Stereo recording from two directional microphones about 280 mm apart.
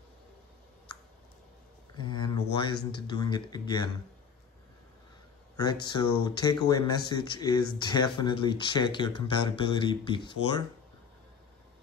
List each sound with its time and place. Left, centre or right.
2.0 s a sound: centre
2.5 s speech: centre
5.6 s speech: centre